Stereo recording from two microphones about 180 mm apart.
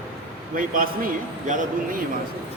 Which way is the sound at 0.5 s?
50° right (ahead or behind).